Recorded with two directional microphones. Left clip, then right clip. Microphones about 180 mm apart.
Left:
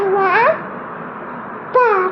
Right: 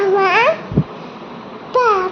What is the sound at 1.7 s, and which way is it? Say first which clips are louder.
Babbling: left 1 dB; 10° right (ahead or behind).